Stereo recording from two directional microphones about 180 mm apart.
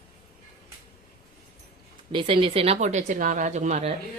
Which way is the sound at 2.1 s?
30° right (ahead or behind).